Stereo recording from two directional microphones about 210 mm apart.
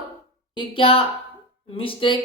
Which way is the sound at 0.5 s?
25° left (ahead or behind).